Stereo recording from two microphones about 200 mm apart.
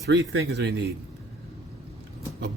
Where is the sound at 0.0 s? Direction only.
60° right (ahead or behind).